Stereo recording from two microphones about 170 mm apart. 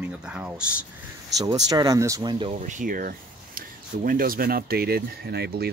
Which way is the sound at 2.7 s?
55° right (ahead or behind).